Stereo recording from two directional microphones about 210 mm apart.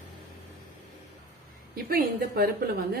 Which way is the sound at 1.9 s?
45° right (ahead or behind).